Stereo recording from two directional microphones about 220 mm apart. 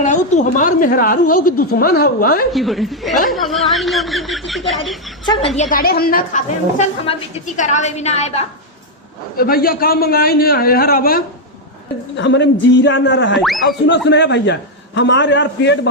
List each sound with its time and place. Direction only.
0.0 s a woman's voice: 35° left (ahead or behind)
2.5 s speech: centre (ahead or behind)
5.5 s a woman's voice: 40° left (ahead or behind)
9.4 s a man's voice: 45° left (ahead or behind)
12.1 s a man's voice: 50° left (ahead or behind)
13.4 s speech: centre (ahead or behind)
13.8 s a man's voice: 50° left (ahead or behind)